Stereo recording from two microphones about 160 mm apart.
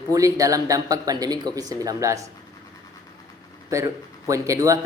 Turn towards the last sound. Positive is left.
turn(degrees=-20)  # may be behind; listen again after turning